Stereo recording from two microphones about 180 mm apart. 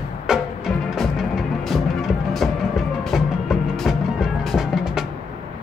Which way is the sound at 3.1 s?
Centre (ahead or behind).